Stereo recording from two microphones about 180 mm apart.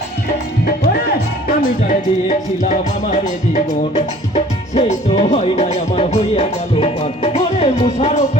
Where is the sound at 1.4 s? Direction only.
50° left (ahead or behind).